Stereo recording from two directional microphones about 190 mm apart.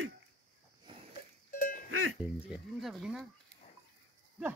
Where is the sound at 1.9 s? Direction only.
90° right.